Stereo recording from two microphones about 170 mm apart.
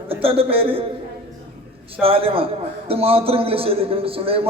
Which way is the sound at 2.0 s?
35° right (ahead or behind).